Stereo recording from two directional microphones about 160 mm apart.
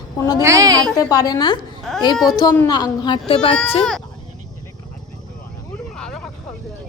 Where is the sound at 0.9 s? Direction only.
20° left (ahead or behind).